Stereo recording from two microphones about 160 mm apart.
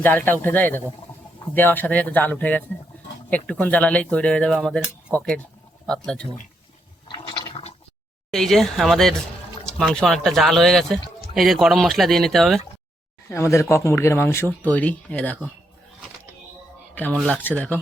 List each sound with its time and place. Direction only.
0.0 s speech: 10° left (ahead or behind)
7.1 s toilet flush: 30° left (ahead or behind)
8.3 s speech: centre (ahead or behind)
13.3 s speech: 15° left (ahead or behind)
16.9 s speech: 10° left (ahead or behind)